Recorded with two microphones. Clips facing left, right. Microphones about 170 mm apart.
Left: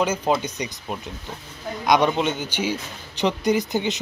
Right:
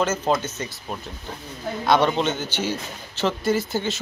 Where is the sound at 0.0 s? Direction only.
10° left (ahead or behind).